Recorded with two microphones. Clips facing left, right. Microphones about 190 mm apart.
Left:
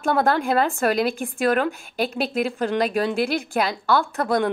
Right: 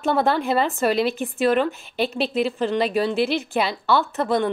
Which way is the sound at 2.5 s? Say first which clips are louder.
Right 1 dB; centre (ahead or behind).